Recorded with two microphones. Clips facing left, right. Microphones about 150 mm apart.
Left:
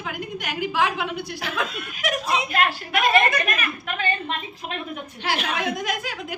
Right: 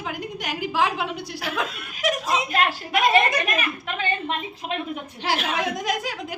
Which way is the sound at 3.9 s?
20° right (ahead or behind).